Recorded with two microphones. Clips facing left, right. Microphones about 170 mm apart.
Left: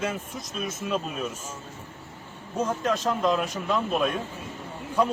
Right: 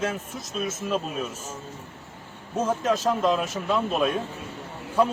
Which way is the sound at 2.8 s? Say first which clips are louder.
Right 2 dB; 5° right (ahead or behind).